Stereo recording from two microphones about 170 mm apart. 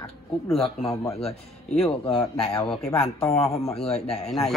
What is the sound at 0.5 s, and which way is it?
Speech, centre (ahead or behind).